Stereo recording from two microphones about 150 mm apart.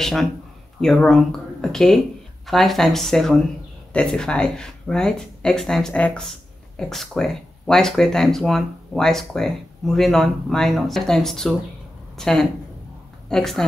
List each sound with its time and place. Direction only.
0.0 s speech: centre (ahead or behind)